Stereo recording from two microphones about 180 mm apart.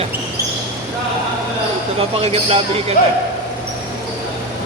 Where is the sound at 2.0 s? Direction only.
35° right (ahead or behind).